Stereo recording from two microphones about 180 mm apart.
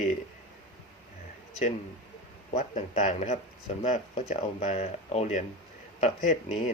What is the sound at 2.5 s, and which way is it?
Speech, 40° left (ahead or behind).